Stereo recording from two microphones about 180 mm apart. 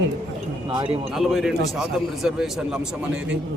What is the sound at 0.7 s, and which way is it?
Speech, 25° right (ahead or behind).